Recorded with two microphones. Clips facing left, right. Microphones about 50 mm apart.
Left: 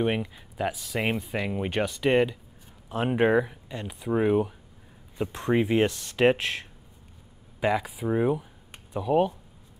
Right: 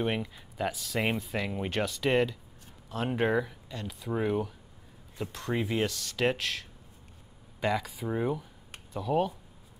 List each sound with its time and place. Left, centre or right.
0.0 s speech: centre; by 6.7 s left
7.6 s speech: centre